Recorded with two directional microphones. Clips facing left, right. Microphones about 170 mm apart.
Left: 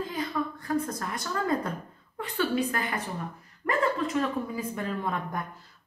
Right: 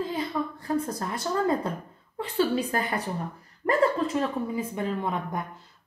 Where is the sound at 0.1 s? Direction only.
30° right (ahead or behind).